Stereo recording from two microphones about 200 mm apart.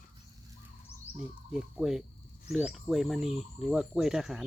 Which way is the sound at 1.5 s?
Centre (ahead or behind).